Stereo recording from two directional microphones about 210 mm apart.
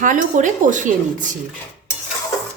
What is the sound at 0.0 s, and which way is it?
Speech, 35° right (ahead or behind).